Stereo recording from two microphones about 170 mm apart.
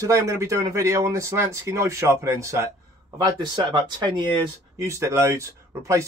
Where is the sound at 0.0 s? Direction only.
20° right (ahead or behind).